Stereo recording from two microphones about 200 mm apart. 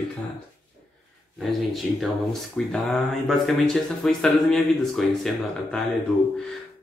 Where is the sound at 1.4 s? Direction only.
Centre (ahead or behind).